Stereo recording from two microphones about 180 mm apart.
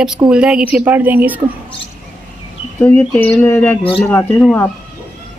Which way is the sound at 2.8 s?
10° left (ahead or behind).